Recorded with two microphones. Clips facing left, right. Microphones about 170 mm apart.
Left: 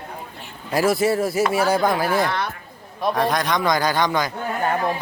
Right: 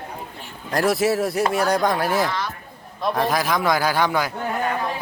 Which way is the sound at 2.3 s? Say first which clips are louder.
Left 2 dB; 60° left (ahead or behind).